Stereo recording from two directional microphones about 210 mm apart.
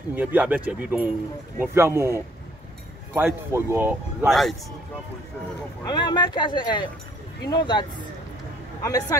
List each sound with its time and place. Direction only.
0.1 s speech: 5° right (ahead or behind)
4.3 s a man's voice: centre (ahead or behind)
5.9 s speech: 20° left (ahead or behind)
8.8 s speech: 15° left (ahead or behind)